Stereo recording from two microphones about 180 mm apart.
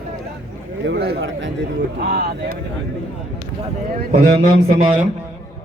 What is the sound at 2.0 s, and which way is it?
Speech, 60° right (ahead or behind).